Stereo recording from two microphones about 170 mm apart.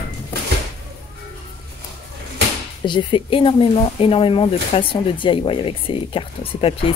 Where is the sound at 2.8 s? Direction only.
30° left (ahead or behind).